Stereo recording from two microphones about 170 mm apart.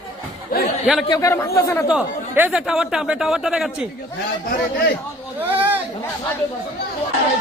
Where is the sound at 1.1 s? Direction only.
20° left (ahead or behind).